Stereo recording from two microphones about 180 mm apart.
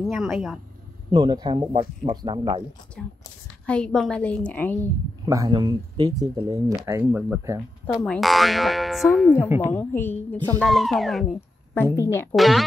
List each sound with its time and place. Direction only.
0.0 s speech: centre (ahead or behind)
1.1 s speech: 25° right (ahead or behind)
3.6 s a woman's voice: 5° left (ahead or behind)
5.2 s speech: 20° right (ahead or behind)
6.9 s speech: 10° right (ahead or behind)
7.8 s speech: centre (ahead or behind)
9.6 s a woman's voice: 15° left (ahead or behind)
10.6 s speech: centre (ahead or behind)
11.7 s a woman's voice: 10° left (ahead or behind)
12.4 s speech: centre (ahead or behind)